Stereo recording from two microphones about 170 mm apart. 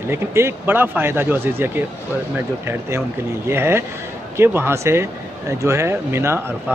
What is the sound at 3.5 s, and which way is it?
Speech, 15° right (ahead or behind).